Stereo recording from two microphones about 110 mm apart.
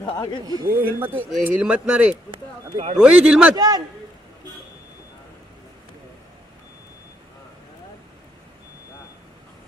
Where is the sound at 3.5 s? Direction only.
40° right (ahead or behind).